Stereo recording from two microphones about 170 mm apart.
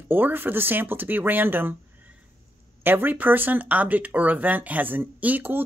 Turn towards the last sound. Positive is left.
turn(degrees=-10)  # may be behind; listen again after turning